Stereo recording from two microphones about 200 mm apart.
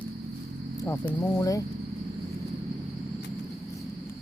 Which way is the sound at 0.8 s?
15° left (ahead or behind).